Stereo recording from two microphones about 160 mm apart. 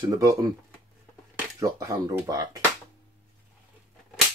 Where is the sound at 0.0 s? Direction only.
20° right (ahead or behind).